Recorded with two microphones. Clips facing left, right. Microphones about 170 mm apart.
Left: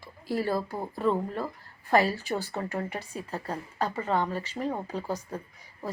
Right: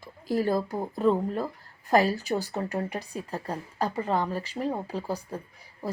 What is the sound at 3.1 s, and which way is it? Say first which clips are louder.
Speech: right 1 dB; 15° right (ahead or behind).